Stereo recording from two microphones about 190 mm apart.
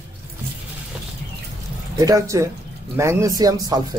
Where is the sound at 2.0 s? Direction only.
15° right (ahead or behind).